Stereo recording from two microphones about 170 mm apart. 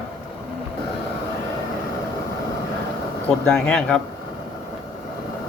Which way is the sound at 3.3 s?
10° left (ahead or behind).